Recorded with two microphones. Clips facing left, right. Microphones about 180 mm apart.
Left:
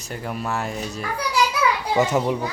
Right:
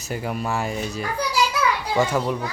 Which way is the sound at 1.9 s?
20° left (ahead or behind).